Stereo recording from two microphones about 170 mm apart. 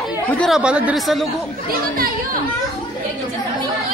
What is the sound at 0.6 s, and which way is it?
Speech, 5° right (ahead or behind).